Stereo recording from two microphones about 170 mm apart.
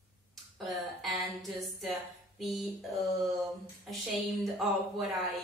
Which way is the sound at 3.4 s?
Centre (ahead or behind).